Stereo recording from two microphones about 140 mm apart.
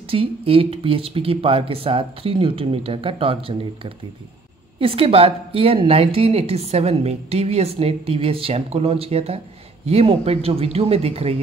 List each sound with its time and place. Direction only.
0.0 s a woman's voice: 40° right (ahead or behind)